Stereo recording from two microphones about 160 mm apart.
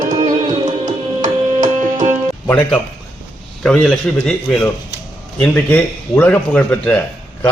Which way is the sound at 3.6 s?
5° left (ahead or behind).